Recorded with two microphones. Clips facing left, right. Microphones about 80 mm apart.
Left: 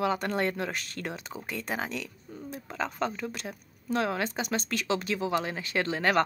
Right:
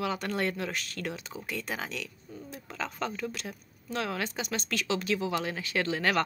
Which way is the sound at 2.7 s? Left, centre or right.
Left.